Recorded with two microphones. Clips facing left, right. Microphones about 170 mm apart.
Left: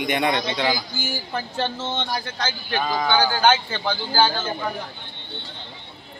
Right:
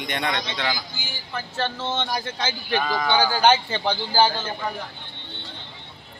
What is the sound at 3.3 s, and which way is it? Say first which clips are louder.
Speech: right 1 dB; 15° right (ahead or behind).